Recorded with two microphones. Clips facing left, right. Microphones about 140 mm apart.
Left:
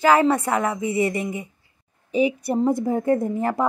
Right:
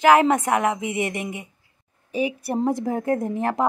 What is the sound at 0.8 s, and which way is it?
Speech, 85° right.